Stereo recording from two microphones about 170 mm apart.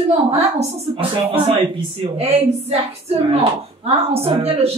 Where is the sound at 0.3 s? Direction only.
40° right (ahead or behind).